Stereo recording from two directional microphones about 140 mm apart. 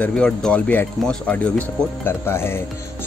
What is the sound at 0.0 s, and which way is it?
Speech, 5° left (ahead or behind).